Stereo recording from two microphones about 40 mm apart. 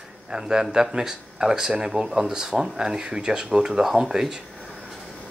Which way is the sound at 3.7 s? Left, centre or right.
Centre.